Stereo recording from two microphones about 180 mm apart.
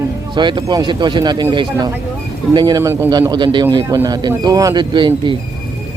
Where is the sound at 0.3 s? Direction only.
25° right (ahead or behind).